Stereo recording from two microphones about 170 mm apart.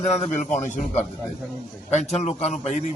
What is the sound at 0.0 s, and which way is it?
A man's voice, 40° left (ahead or behind).